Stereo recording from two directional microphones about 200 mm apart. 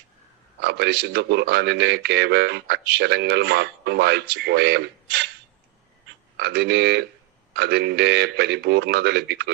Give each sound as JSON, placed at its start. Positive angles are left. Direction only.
{"t": 0.6, "sound": "speech", "side_deg": -55}
{"t": 6.3, "sound": "speech", "side_deg": -55}